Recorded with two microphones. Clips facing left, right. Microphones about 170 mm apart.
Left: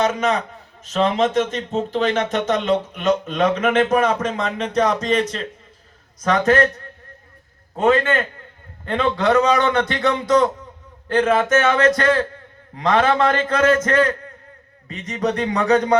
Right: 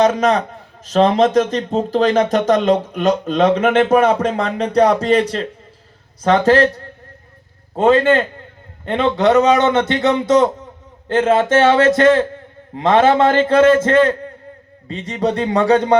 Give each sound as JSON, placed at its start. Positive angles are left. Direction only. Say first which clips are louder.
{"t": 0.0, "sound": "a man's voice", "louder": "right 5 dB", "side_deg": -35}